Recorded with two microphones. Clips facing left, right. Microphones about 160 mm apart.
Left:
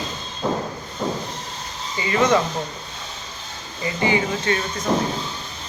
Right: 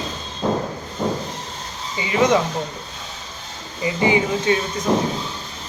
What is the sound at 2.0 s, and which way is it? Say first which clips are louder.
Speech: right 1 dB; 10° right (ahead or behind).